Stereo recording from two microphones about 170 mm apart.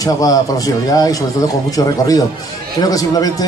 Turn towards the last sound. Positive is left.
turn(degrees=20)  # may be behind; listen again after turning